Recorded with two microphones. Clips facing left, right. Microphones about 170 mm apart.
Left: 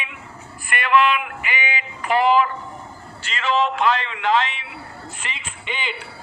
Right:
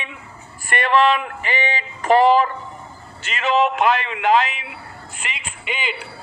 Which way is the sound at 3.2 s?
20° right (ahead or behind).